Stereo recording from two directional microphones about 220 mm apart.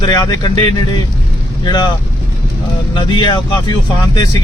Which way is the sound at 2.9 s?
20° left (ahead or behind).